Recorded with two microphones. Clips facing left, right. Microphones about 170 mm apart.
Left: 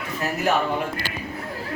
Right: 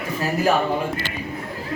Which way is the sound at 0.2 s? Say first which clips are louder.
Right 3 dB; 30° right (ahead or behind).